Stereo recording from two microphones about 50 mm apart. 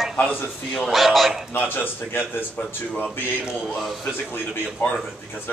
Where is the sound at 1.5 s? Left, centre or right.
Left.